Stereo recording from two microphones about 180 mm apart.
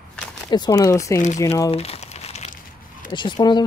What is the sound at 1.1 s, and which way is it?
Speech, 40° left (ahead or behind).